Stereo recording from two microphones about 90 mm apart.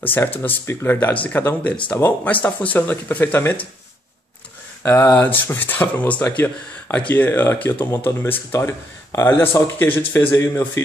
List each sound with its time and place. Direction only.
0.0 s speech: 20° left (ahead or behind)
4.8 s speech: 30° left (ahead or behind)